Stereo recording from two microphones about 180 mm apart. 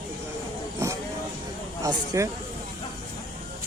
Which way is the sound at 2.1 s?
15° right (ahead or behind).